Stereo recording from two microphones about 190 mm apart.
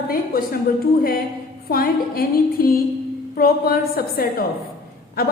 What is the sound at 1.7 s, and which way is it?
Speech, 50° left (ahead or behind).